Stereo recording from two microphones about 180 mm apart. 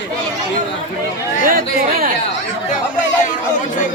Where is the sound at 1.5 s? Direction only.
50° right (ahead or behind).